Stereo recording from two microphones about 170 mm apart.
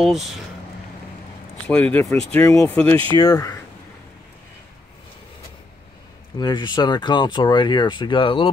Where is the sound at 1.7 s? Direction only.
10° left (ahead or behind).